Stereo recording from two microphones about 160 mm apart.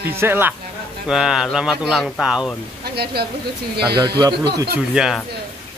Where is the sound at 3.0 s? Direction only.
80° right.